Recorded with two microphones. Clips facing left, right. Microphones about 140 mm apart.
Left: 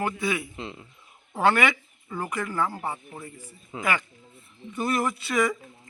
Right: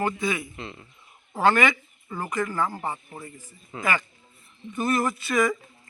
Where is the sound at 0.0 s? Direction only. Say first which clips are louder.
Right 1 dB; 10° left (ahead or behind).